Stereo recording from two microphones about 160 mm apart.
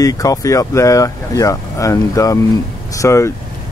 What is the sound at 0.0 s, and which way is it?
Speech, 20° left (ahead or behind).